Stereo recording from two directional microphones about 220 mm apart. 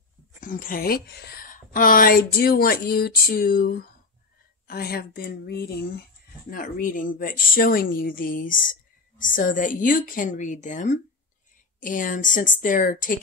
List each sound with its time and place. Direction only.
0.4 s a woman's voice: 40° left (ahead or behind)